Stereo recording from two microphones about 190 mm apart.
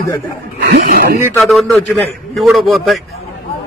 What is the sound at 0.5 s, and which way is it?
Speech, 55° right (ahead or behind).